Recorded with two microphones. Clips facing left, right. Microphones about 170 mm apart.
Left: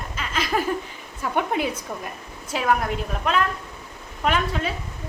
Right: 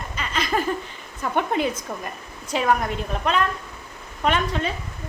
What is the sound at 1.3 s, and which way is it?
Speech, 5° left (ahead or behind).